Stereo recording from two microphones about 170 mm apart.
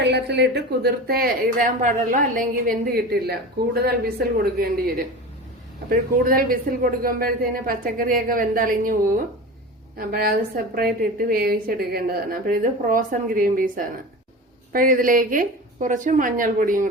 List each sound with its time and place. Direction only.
0.0 s a woman's voice: 80° right; by 16.9 s 55° right (ahead or behind)